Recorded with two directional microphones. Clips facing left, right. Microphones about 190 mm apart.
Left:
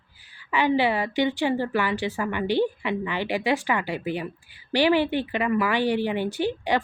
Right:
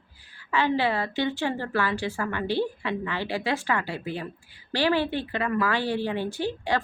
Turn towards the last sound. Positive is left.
turn(degrees=15)  # may be behind; listen again after turning